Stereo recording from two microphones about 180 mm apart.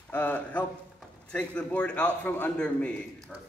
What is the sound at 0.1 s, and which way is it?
A man's voice, 10° left (ahead or behind).